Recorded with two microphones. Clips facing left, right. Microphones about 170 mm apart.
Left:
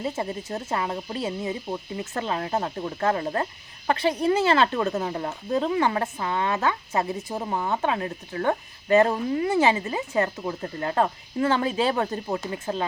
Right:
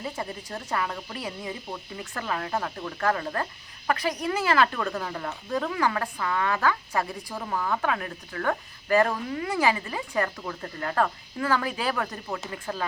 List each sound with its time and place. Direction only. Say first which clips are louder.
0.0 s speech: left 5 dB; 25° left (ahead or behind)